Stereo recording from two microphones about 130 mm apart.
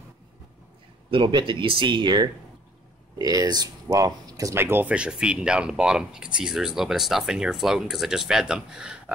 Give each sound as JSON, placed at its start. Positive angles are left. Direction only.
{"t": 1.1, "sound": "speech", "side_deg": -40}